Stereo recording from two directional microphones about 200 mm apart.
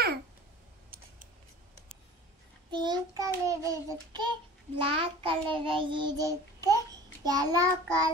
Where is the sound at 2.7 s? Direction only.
20° right (ahead or behind).